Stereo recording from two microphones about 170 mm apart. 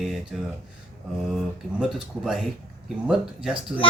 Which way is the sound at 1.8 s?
5° right (ahead or behind).